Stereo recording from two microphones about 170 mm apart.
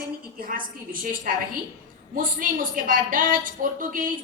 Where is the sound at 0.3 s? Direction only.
55° right (ahead or behind).